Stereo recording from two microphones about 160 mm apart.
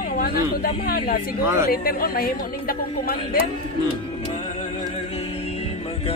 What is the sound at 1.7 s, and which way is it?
A woman's voice, 70° left (ahead or behind).